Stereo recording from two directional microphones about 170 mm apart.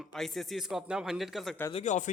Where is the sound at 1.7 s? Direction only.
45° left (ahead or behind).